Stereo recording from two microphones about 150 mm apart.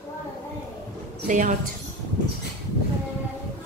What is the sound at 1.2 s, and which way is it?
Speech, 60° right (ahead or behind).